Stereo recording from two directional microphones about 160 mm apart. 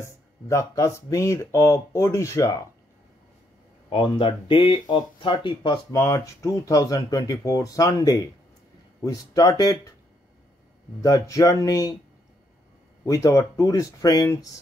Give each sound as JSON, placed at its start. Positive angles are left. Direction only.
{"t": 0.0, "sound": "speech", "side_deg": 20}
{"t": 3.9, "sound": "speech", "side_deg": 35}
{"t": 5.9, "sound": "speech", "side_deg": 20}
{"t": 11.0, "sound": "speech", "side_deg": 20}
{"t": 13.0, "sound": "speech", "side_deg": 20}